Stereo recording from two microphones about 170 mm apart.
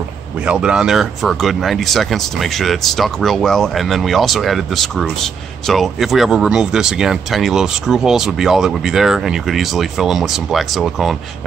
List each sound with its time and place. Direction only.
0.5 s speech: 5° right (ahead or behind)